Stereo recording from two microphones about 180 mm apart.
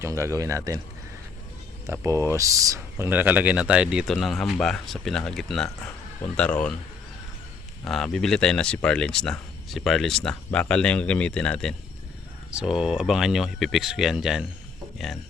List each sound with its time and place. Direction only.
0.0 s speech: 15° right (ahead or behind)
1.9 s speech: 15° right (ahead or behind); by 6.7 s 5° left (ahead or behind)
7.9 s speech: centre (ahead or behind)